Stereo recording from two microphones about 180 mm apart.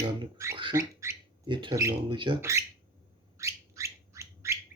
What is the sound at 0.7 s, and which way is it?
Squawk, 15° right (ahead or behind).